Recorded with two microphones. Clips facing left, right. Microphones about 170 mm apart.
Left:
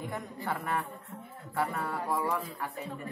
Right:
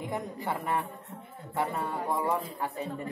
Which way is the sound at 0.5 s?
20° right (ahead or behind).